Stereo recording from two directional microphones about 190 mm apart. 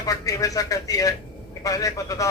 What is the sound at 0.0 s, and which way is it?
A man's voice, 20° left (ahead or behind).